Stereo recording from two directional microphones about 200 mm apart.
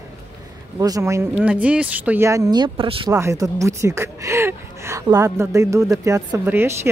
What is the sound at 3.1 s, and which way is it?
Speech, 15° right (ahead or behind).